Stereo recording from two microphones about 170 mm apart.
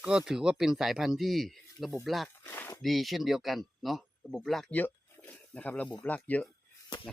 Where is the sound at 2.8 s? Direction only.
Centre (ahead or behind).